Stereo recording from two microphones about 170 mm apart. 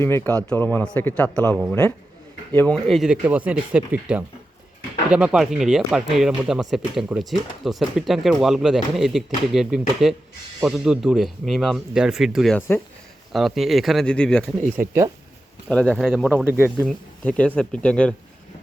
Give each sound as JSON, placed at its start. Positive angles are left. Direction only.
{"t": 0.0, "sound": "speech", "side_deg": 15}
{"t": 2.6, "sound": "speech", "side_deg": 5}
{"t": 14.8, "sound": "speech", "side_deg": -60}
{"t": 15.7, "sound": "speech", "side_deg": 5}
{"t": 16.8, "sound": "speech", "side_deg": 5}